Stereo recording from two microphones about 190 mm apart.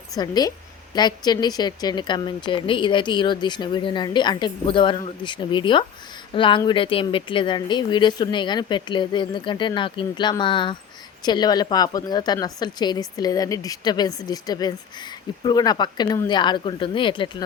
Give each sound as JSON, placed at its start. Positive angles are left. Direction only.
{"t": 0.2, "sound": "speech", "side_deg": 20}